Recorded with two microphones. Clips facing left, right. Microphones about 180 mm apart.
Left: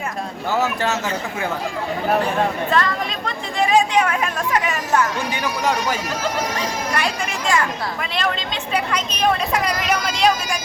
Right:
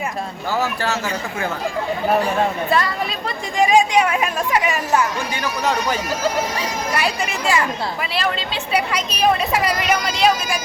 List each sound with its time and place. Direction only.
0.6 s a man's voice: 20° left (ahead or behind)
2.6 s speech: 10° right (ahead or behind)
5.3 s speech: 10° left (ahead or behind)
6.6 s speech: 5° right (ahead or behind)
8.7 s speech: 10° right (ahead or behind)